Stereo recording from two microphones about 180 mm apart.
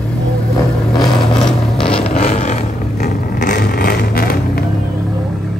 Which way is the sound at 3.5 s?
55° left (ahead or behind).